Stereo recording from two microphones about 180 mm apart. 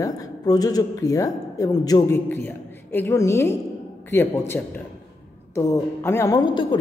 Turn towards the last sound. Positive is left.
turn(degrees=25)  # may be behind; listen again after turning